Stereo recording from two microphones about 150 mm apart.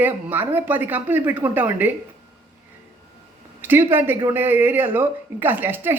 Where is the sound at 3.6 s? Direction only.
15° right (ahead or behind).